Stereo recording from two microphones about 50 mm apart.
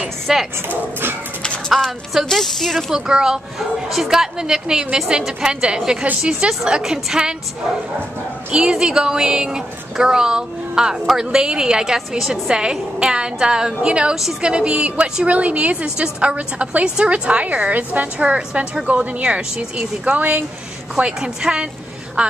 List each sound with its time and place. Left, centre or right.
0.3 s a woman's voice: centre
1.7 s speech: centre
2.9 s a woman's voice: centre
8.5 s a woman's voice: centre
20.9 s a woman's voice: centre